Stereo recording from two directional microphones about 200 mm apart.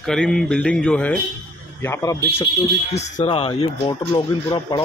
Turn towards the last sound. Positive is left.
turn(degrees=15)  # may be behind; listen again after turning